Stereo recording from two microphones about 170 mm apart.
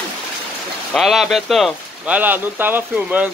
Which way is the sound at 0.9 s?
Centre (ahead or behind).